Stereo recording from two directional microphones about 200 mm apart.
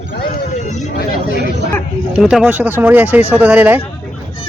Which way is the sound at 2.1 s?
5° right (ahead or behind).